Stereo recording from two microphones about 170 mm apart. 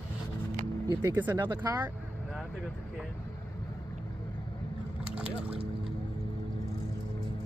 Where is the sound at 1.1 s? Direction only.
10° right (ahead or behind).